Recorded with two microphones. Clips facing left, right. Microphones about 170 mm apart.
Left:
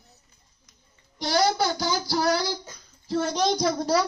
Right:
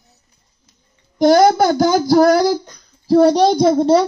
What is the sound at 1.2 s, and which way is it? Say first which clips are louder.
A child's voice: right 12 dB; 50° right (ahead or behind).